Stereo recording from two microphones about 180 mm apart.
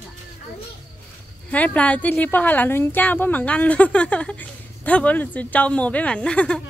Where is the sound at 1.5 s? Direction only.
10° left (ahead or behind).